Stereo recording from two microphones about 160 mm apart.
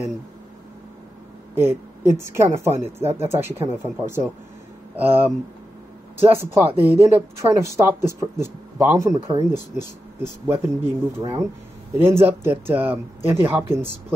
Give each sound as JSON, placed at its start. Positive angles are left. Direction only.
{"t": 1.5, "sound": "a woman's voice", "side_deg": -15}
{"t": 3.0, "sound": "speech", "side_deg": -40}
{"t": 3.3, "sound": "speech", "side_deg": -15}